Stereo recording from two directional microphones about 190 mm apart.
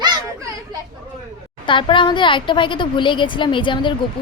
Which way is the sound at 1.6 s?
25° left (ahead or behind).